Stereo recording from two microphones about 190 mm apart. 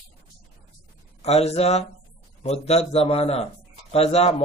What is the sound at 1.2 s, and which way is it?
Speech, 35° left (ahead or behind).